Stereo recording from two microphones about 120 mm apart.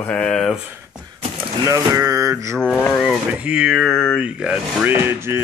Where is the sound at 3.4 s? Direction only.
10° right (ahead or behind).